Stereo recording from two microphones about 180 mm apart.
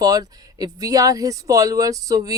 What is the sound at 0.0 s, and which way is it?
Speech, 20° right (ahead or behind).